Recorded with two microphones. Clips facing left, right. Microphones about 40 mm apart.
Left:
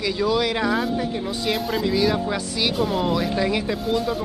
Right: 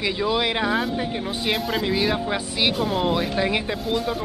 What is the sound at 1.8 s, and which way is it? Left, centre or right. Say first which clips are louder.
Speech: left 2 dB; right.